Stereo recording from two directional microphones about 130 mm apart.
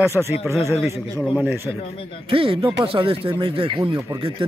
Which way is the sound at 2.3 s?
45° right (ahead or behind).